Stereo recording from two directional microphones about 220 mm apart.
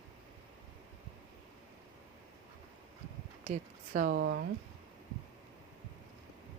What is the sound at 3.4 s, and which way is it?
Speech, 35° right (ahead or behind).